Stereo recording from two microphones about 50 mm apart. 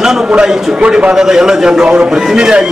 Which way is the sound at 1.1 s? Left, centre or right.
Centre.